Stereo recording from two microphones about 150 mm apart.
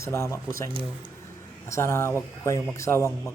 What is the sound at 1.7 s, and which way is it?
A man's voice, 15° left (ahead or behind).